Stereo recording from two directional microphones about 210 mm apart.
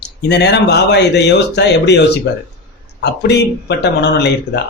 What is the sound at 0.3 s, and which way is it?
Speech, 55° left (ahead or behind).